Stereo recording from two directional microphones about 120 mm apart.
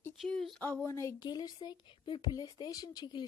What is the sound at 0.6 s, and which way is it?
A woman's voice, 15° left (ahead or behind).